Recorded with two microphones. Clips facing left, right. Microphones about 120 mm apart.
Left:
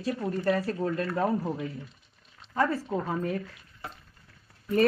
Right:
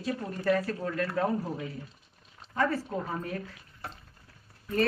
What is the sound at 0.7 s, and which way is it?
Speech, 35° left (ahead or behind).